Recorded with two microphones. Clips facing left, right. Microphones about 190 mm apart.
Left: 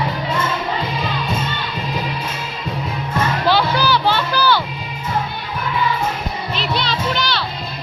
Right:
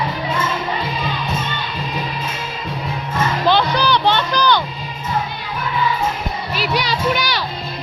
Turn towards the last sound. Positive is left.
turn(degrees=-15)  # may be behind; listen again after turning